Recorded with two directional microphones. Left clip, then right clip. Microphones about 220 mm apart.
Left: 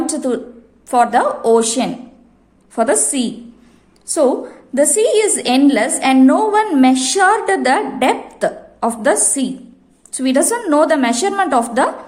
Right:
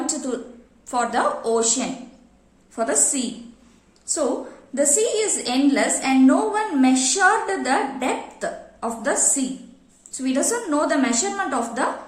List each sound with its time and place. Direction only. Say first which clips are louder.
0.0 s a sound: left 8 dB; 35° left (ahead or behind)
0.9 s a woman's voice: left 8 dB; 35° left (ahead or behind)
2.7 s a woman's voice: left 7 dB; 40° left (ahead or behind)